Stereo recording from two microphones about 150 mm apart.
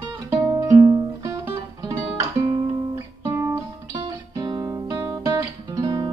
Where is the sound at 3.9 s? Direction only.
25° right (ahead or behind).